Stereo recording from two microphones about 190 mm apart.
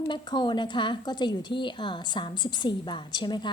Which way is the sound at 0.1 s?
25° left (ahead or behind).